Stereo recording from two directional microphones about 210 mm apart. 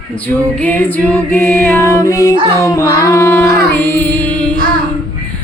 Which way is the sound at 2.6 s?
15° left (ahead or behind).